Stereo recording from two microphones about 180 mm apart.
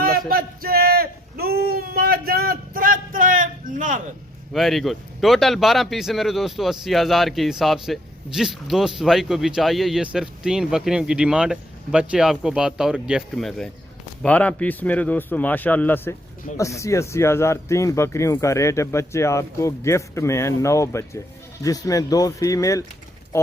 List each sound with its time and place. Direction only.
0.3 s speech: 55° right (ahead or behind)
4.5 s speech: centre (ahead or behind)